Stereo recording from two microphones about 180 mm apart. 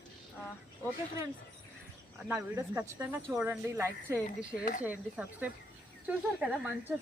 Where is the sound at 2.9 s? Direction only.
10° right (ahead or behind).